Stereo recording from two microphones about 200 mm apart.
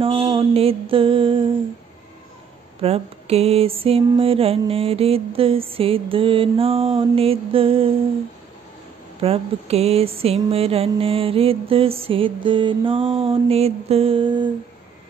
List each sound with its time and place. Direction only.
0.0 s a sound: 25° right (ahead or behind)
2.8 s music: 30° right (ahead or behind)
9.2 s music: 30° right (ahead or behind)